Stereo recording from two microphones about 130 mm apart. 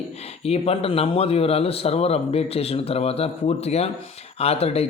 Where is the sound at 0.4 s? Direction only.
50° left (ahead or behind).